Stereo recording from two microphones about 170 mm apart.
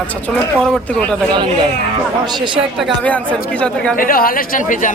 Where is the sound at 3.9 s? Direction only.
55° left (ahead or behind).